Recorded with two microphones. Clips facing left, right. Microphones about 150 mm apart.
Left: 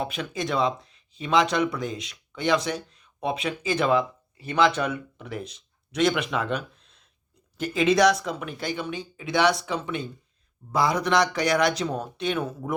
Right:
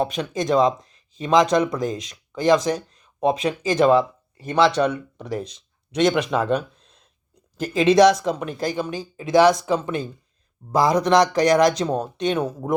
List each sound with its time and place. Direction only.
0.0 s speech: 40° right (ahead or behind)